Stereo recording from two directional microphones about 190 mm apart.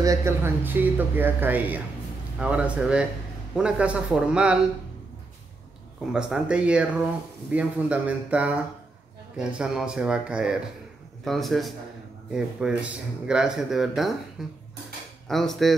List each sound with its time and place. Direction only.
0.0 s speech: 15° right (ahead or behind)
6.1 s speech: 5° right (ahead or behind)